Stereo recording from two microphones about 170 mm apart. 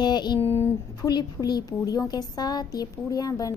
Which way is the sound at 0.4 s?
15° left (ahead or behind).